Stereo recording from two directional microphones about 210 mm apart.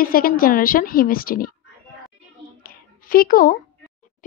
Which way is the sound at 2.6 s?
45° left (ahead or behind).